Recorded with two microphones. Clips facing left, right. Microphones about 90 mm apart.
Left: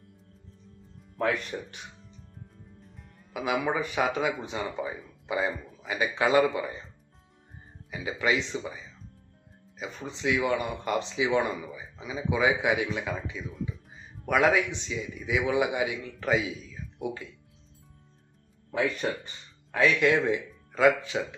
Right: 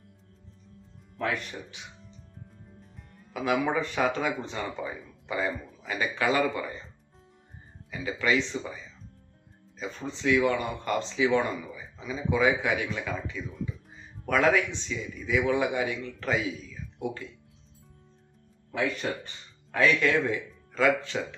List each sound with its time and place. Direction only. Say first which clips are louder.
1.5 s speech: left 5 dB; 35° left (ahead or behind)
3.3 s speech: right 1 dB; 15° left (ahead or behind)
7.9 s speech: even; 15° left (ahead or behind)
13.5 s speech: even; centre (ahead or behind)
14.3 s speech: even; 15° left (ahead or behind)
19.7 s speech: left 1 dB; 15° left (ahead or behind)